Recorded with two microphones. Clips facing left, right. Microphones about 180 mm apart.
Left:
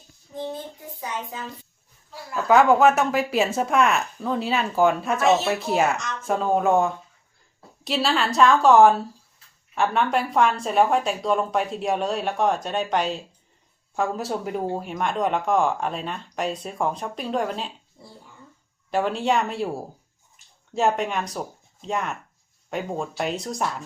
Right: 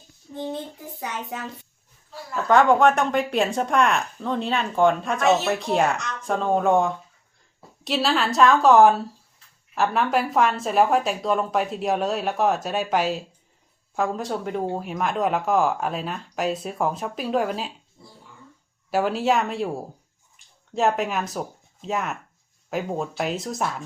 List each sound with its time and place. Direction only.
0.9 s a child's voice: 70° right (ahead or behind)
2.3 s a woman's voice: 5° left (ahead or behind)
18.9 s a woman's voice: 5° right (ahead or behind)